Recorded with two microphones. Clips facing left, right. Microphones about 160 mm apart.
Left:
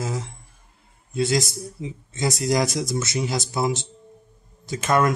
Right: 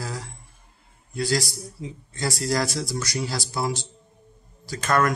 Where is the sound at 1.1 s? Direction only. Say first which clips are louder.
Left 3 dB; 20° left (ahead or behind).